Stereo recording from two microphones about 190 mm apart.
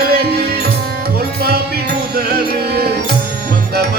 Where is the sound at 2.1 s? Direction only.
55° right (ahead or behind).